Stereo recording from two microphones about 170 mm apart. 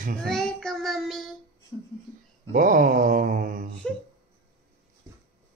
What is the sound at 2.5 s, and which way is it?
Mantra, 55° right (ahead or behind).